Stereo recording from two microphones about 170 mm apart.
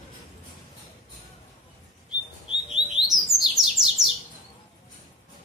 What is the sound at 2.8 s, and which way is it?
Alarm, 30° left (ahead or behind).